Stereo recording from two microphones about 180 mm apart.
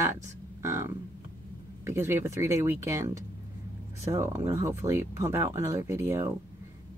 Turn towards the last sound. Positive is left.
turn(degrees=-15)  # may be behind; listen again after turning